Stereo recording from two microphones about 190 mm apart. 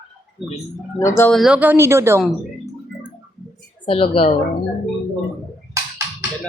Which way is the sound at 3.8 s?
30° left (ahead or behind).